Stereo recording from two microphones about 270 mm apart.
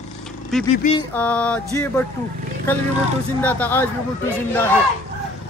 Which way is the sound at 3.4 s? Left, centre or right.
Centre.